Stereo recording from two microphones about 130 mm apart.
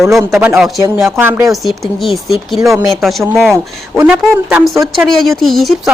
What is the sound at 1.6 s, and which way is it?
A woman's voice, centre (ahead or behind).